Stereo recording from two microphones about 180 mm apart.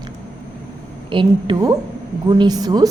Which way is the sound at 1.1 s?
25° right (ahead or behind).